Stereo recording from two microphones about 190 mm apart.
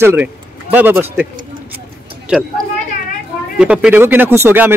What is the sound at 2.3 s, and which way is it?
Speech, 5° right (ahead or behind).